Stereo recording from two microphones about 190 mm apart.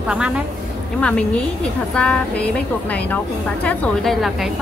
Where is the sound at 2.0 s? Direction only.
5° left (ahead or behind).